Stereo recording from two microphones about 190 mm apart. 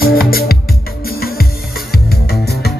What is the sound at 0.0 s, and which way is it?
Music, 50° left (ahead or behind).